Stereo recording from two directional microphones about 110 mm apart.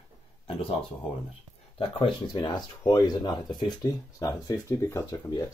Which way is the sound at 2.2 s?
40° left (ahead or behind).